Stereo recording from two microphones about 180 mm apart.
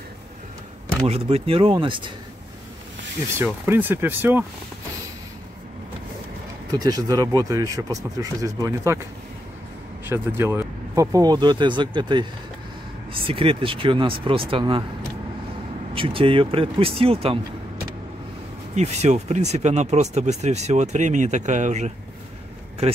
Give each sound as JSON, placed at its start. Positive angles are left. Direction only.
{"t": 1.0, "sound": "speech", "side_deg": -35}
{"t": 3.3, "sound": "speech", "side_deg": -10}
{"t": 6.7, "sound": "speech", "side_deg": -20}
{"t": 10.0, "sound": "speech", "side_deg": -10}
{"t": 15.9, "sound": "speech", "side_deg": -30}
{"t": 18.8, "sound": "speech", "side_deg": -40}